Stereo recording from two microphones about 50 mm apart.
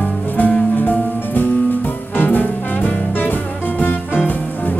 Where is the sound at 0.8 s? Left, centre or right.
Left.